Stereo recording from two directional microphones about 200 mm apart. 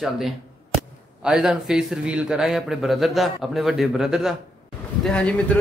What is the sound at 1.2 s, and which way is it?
Speech, 5° right (ahead or behind).